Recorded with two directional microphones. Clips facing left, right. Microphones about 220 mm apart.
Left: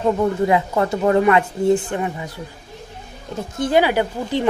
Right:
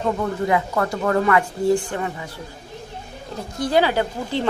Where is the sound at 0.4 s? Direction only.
25° left (ahead or behind).